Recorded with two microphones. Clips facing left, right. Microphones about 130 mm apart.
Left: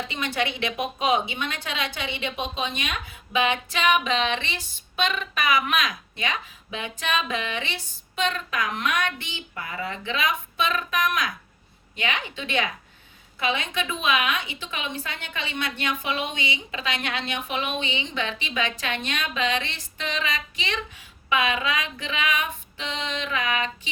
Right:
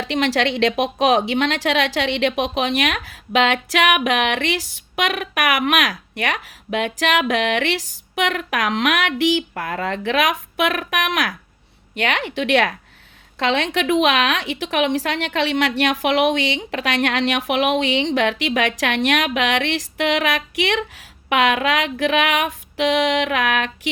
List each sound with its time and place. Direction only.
0.0 s a woman's voice: 80° right